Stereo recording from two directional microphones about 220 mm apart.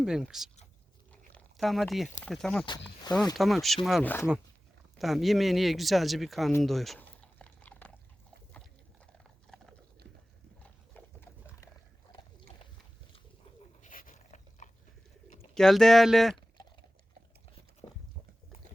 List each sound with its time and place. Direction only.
0.0 s speech: centre (ahead or behind)
6.6 s chewing: centre (ahead or behind)
9.5 s typing: centre (ahead or behind)
10.9 s pig: 10° left (ahead or behind)
13.8 s dog: 35° left (ahead or behind)
15.5 s speech: centre (ahead or behind)
17.8 s a sound: 20° left (ahead or behind)